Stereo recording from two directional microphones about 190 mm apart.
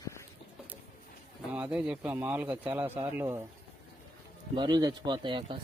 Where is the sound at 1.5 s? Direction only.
5° right (ahead or behind).